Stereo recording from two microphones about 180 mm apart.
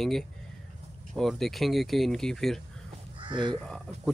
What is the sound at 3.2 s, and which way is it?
Speech, 25° right (ahead or behind).